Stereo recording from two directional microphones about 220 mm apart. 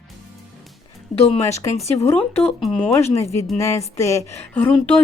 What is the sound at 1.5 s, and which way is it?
Speech, 15° left (ahead or behind).